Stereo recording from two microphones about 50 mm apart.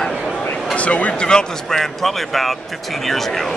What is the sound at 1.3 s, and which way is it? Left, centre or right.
Speech, centre.